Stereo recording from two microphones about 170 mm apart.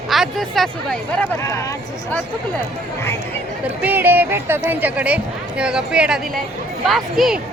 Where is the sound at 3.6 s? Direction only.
10° right (ahead or behind).